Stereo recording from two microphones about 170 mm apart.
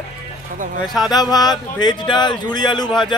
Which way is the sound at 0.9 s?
Centre (ahead or behind).